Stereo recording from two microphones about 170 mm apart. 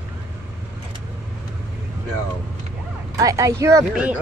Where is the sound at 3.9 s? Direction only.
10° right (ahead or behind).